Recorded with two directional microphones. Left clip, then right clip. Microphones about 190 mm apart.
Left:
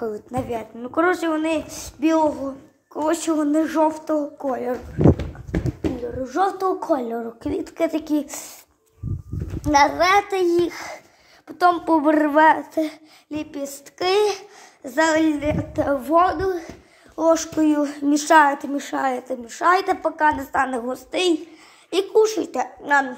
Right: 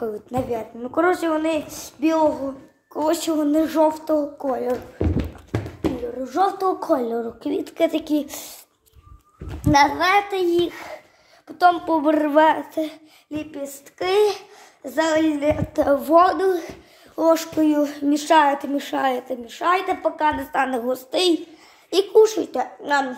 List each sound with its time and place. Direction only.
0.0 s a woman's voice: 5° left (ahead or behind)
2.9 s a woman's voice: centre (ahead or behind)
6.2 s a woman's voice: 10° left (ahead or behind)
9.6 s a woman's voice: 10° left (ahead or behind)
12.7 s a sound: 20° left (ahead or behind)
13.6 s a child's voice: 25° left (ahead or behind)
15.7 s a woman's voice: 10° right (ahead or behind); by 18.5 s 15° left (ahead or behind)
18.5 s a woman's voice: centre (ahead or behind)
19.2 s a woman's voice: 20° left (ahead or behind)
20.2 s a woman's voice: 10° left (ahead or behind)